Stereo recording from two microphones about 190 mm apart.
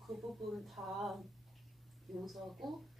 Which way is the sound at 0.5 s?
Centre (ahead or behind).